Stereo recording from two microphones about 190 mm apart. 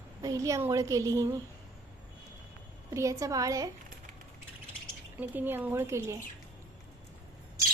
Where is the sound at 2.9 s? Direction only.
15° right (ahead or behind).